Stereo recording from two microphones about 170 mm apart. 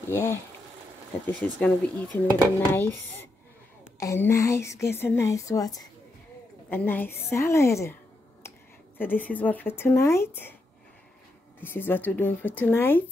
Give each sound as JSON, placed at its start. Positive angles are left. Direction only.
{"t": 0.1, "sound": "speech", "side_deg": 15}
{"t": 6.7, "sound": "speech", "side_deg": 10}
{"t": 11.6, "sound": "speech", "side_deg": 10}